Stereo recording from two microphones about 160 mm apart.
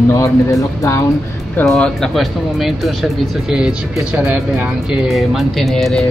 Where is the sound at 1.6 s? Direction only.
5° left (ahead or behind).